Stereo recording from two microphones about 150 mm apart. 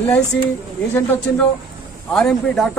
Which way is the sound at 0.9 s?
15° left (ahead or behind).